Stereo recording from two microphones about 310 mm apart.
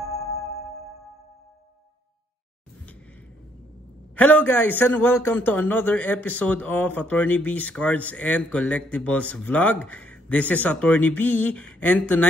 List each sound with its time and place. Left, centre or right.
4.1 s a man's voice: centre